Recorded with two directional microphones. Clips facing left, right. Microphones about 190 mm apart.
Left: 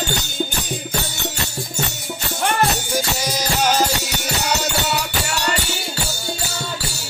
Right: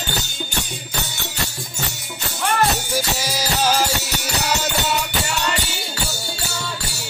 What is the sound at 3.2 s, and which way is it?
Music, 5° right (ahead or behind).